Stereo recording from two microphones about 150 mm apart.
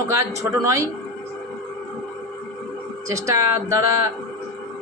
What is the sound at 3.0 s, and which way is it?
A man's voice, 20° right (ahead or behind).